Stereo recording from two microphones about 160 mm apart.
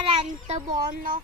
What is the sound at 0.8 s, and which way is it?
Speech, 60° right (ahead or behind).